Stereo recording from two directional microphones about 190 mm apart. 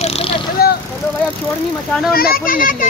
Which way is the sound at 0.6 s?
55° left (ahead or behind).